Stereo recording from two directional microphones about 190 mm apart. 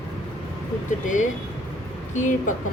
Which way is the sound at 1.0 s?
40° left (ahead or behind).